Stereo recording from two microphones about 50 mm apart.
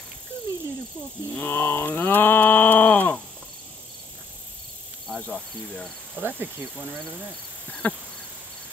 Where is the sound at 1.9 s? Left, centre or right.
Left.